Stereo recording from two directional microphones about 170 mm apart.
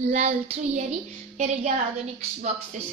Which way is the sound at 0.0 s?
40° right (ahead or behind).